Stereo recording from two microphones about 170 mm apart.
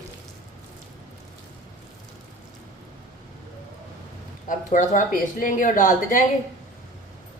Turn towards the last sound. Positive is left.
turn(degrees=50)  # may be behind; listen again after turning